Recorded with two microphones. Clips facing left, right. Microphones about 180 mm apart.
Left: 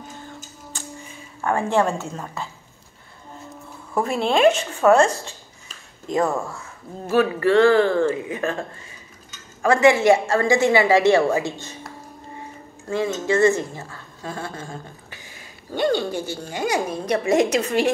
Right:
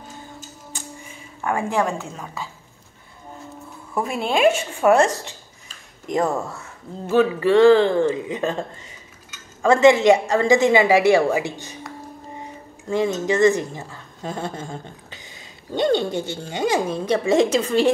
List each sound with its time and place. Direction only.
3.9 s a woman's voice: 5° right (ahead or behind); by 8.5 s 20° right (ahead or behind)
9.6 s a woman's voice: 25° right (ahead or behind)
12.9 s speech: 20° right (ahead or behind)